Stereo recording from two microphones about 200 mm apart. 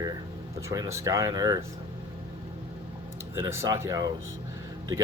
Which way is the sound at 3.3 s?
15° right (ahead or behind).